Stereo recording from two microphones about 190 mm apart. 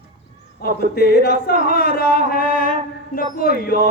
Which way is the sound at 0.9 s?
55° left (ahead or behind).